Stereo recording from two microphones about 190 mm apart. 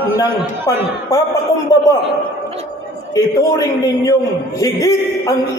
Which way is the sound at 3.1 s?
15° left (ahead or behind).